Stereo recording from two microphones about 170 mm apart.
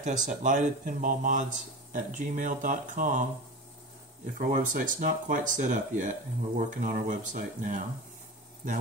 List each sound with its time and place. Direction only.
0.0 s speech: 50° right (ahead or behind)
4.4 s speech: 50° right (ahead or behind)